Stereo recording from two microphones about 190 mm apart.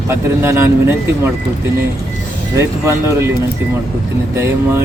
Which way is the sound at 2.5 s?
15° right (ahead or behind).